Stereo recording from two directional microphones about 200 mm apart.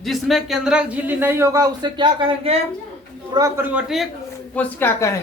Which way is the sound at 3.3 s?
15° right (ahead or behind).